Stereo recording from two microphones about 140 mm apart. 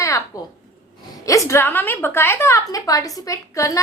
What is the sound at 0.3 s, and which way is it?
A woman's voice, 25° left (ahead or behind).